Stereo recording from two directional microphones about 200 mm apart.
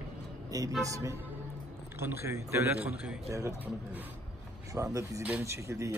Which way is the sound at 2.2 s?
15° right (ahead or behind).